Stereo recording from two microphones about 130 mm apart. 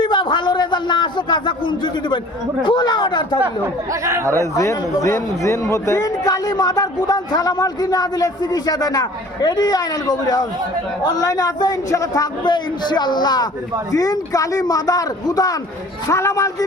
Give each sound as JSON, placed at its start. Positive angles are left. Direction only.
{"t": 0.0, "sound": "a man's voice", "side_deg": 35}
{"t": 4.0, "sound": "speech", "side_deg": -25}
{"t": 4.3, "sound": "a man's voice", "side_deg": 20}